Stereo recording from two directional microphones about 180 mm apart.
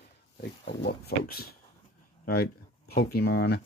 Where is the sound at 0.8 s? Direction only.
60° left (ahead or behind).